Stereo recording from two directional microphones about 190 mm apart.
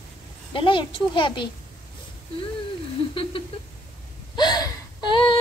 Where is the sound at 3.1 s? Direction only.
25° left (ahead or behind).